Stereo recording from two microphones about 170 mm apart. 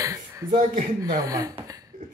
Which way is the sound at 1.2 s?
20° right (ahead or behind).